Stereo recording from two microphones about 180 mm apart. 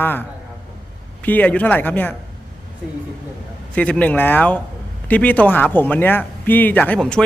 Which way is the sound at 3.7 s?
5° left (ahead or behind).